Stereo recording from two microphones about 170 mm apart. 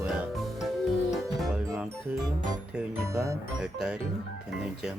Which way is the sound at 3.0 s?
15° right (ahead or behind).